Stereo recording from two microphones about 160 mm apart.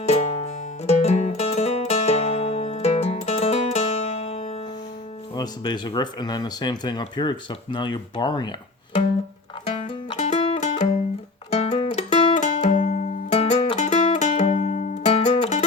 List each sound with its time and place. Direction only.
0.0 s music: 45° left (ahead or behind)
5.3 s speech: 25° left (ahead or behind)
9.6 s music: 45° left (ahead or behind)